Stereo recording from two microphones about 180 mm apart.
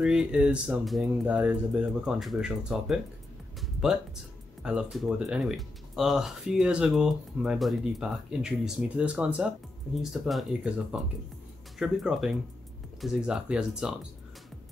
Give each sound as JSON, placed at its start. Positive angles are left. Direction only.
{"t": 0.0, "sound": "speech", "side_deg": -5}
{"t": 4.6, "sound": "speech", "side_deg": -5}